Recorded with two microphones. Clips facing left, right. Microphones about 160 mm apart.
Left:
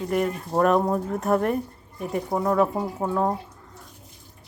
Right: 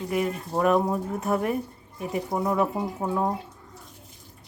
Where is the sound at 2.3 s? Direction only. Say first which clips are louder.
Left 2 dB; 25° left (ahead or behind).